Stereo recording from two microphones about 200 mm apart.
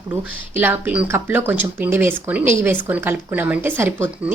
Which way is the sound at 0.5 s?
10° right (ahead or behind).